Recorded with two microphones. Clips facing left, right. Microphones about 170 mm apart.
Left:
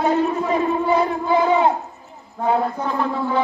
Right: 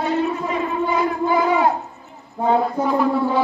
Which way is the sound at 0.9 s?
30° left (ahead or behind).